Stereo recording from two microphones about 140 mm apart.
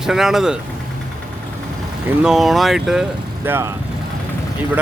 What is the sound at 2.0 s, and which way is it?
Speech, 5° right (ahead or behind).